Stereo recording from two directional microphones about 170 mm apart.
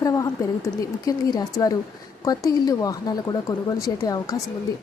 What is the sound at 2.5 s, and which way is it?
Speech, 20° left (ahead or behind).